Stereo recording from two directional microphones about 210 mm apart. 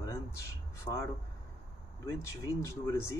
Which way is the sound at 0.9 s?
20° left (ahead or behind).